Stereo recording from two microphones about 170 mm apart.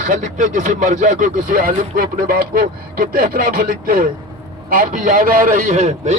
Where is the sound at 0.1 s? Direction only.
50° right (ahead or behind).